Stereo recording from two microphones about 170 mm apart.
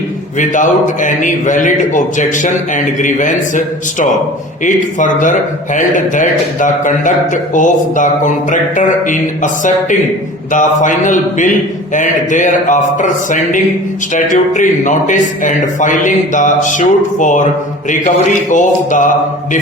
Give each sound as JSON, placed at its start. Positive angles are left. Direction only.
{"t": 0.3, "sound": "a man's voice", "side_deg": 50}
{"t": 18.5, "sound": "a man's voice", "side_deg": 50}